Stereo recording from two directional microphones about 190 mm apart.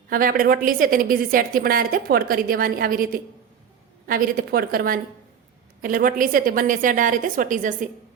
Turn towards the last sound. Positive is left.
turn(degrees=-45)  # may be behind; listen again after turning